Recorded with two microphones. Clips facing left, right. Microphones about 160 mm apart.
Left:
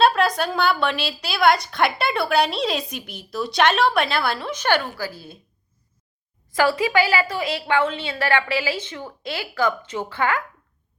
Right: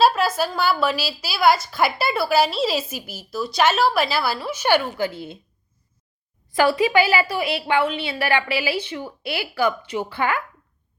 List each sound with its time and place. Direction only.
0.0 s a woman's voice: 5° right (ahead or behind)
4.9 s a woman's voice: 25° right (ahead or behind)
6.6 s a woman's voice: 20° right (ahead or behind)